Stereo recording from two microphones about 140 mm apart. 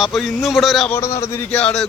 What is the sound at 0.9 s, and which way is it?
Speech, 20° left (ahead or behind).